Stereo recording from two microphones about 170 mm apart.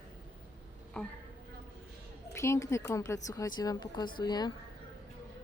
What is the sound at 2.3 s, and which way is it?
A woman's voice, 15° left (ahead or behind).